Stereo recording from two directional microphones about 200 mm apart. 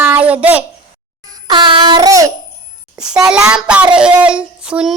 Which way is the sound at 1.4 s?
20° right (ahead or behind).